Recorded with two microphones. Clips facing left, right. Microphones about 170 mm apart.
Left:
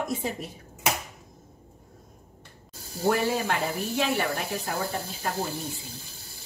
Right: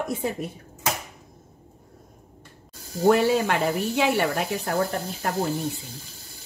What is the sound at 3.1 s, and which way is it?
Speech, 70° right (ahead or behind).